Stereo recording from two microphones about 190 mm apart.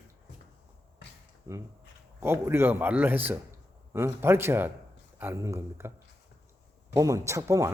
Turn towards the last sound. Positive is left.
turn(degrees=-15)  # may be behind; listen again after turning